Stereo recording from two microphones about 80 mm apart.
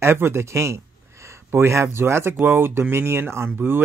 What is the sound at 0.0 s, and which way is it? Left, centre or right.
Speech, right.